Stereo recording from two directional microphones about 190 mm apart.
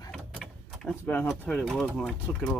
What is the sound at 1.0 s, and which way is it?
Speech, 10° left (ahead or behind).